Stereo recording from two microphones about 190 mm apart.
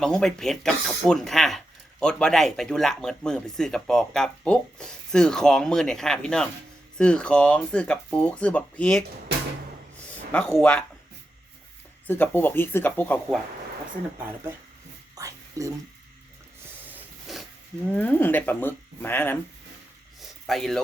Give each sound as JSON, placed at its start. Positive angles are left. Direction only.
{"t": 0.0, "sound": "speech", "side_deg": 5}
{"t": 10.3, "sound": "speech", "side_deg": 5}
{"t": 12.0, "sound": "speech", "side_deg": 10}
{"t": 15.1, "sound": "a sound", "side_deg": -15}
{"t": 16.7, "sound": "a sound", "side_deg": -10}
{"t": 17.9, "sound": "speech", "side_deg": 10}
{"t": 20.5, "sound": "speech", "side_deg": 0}